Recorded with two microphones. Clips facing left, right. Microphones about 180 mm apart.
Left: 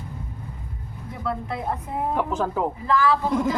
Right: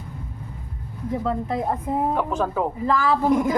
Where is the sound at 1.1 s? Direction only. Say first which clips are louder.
Right 5 dB; 40° right (ahead or behind).